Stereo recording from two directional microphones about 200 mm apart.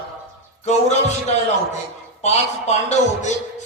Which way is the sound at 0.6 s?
35° left (ahead or behind).